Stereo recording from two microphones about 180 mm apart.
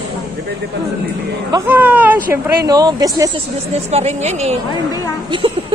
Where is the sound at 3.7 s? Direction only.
35° right (ahead or behind).